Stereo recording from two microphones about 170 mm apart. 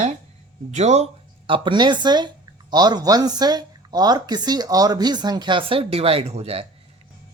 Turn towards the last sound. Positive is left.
turn(degrees=-35)  # may be behind; listen again after turning